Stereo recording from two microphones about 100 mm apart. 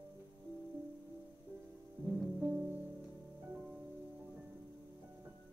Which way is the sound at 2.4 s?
15° right (ahead or behind).